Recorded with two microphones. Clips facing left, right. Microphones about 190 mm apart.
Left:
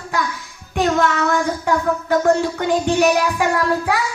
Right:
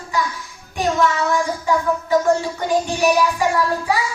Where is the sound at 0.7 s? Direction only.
60° left (ahead or behind).